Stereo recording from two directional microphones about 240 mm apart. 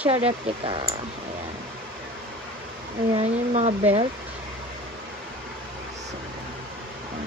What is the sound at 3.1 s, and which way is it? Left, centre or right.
Speech, right.